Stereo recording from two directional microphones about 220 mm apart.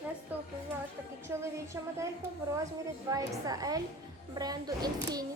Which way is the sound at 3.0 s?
15° right (ahead or behind).